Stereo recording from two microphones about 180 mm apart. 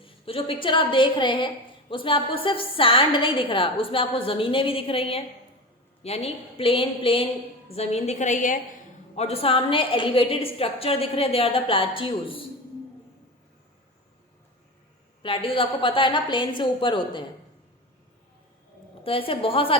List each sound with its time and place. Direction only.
0.0 s a woman's voice: 30° left (ahead or behind)
9.1 s a woman's voice: 35° left (ahead or behind)
15.2 s a woman's voice: 30° left (ahead or behind)
19.0 s a woman's voice: 30° left (ahead or behind)